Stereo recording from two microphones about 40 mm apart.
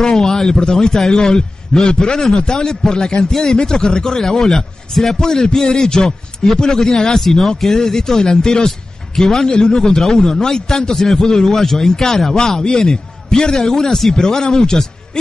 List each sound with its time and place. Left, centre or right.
0.0 s a man's voice: centre